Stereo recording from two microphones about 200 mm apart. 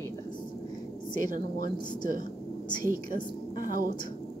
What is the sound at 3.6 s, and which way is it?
Speech, 45° right (ahead or behind).